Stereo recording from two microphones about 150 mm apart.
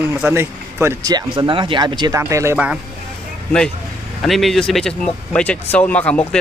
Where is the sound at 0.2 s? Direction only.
15° right (ahead or behind).